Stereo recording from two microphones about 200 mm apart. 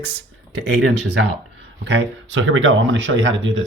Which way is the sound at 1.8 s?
60° right (ahead or behind).